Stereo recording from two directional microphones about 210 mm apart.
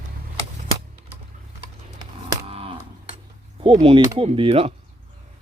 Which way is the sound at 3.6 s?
25° right (ahead or behind).